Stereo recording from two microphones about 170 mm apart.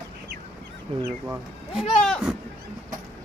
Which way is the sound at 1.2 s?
5° right (ahead or behind).